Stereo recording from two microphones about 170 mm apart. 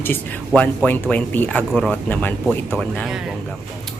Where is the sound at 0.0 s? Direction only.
10° left (ahead or behind).